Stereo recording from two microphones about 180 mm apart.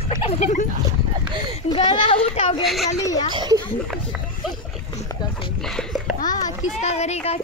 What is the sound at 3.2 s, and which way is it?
Speech, 25° right (ahead or behind).